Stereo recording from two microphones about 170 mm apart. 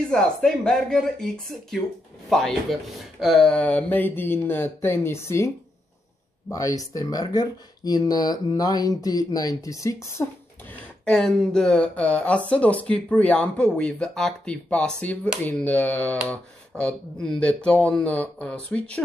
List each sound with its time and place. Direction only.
0.1 s speech: 5° left (ahead or behind)
6.5 s speech: 20° left (ahead or behind)
10.7 s speech: 5° left (ahead or behind)